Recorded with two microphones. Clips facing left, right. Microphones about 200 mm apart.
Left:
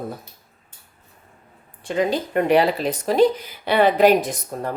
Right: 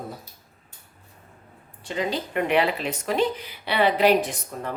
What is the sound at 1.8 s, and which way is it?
Speech, 50° left (ahead or behind).